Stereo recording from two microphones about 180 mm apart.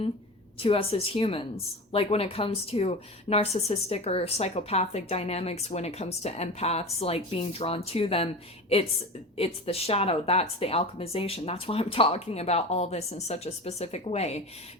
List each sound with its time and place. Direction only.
0.6 s speech: 30° left (ahead or behind)
9.4 s speech: 35° left (ahead or behind)